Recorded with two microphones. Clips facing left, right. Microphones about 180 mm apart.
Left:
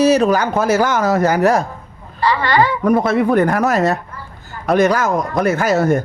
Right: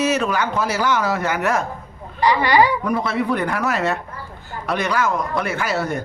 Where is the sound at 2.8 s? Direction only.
45° left (ahead or behind).